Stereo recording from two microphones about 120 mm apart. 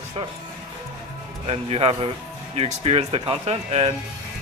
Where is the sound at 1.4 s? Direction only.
55° right (ahead or behind).